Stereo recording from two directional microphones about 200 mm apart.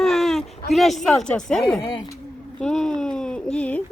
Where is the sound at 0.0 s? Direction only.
Centre (ahead or behind).